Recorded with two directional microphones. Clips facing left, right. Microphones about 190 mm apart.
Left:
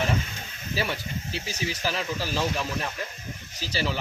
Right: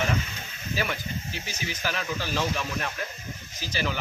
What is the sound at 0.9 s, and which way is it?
Speech, 35° left (ahead or behind).